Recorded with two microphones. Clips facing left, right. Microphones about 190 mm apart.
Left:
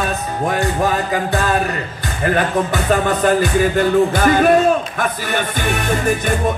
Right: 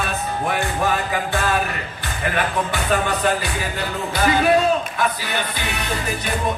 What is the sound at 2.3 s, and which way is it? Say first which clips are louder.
Music: left 3 dB; 45° left (ahead or behind).